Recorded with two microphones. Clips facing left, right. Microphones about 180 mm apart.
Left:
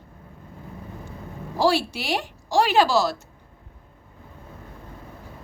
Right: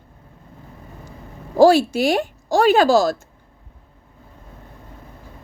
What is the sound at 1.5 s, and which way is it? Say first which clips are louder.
Speech: right 9 dB; 45° right (ahead or behind).